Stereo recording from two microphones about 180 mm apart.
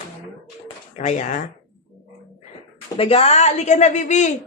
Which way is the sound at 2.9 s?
35° left (ahead or behind).